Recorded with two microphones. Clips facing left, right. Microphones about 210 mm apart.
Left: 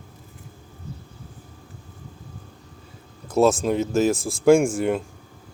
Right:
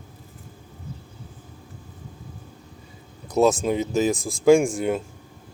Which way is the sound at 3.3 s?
Centre (ahead or behind).